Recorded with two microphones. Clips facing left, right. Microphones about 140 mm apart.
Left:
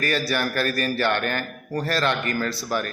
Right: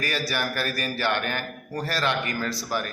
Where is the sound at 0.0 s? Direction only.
15° right (ahead or behind).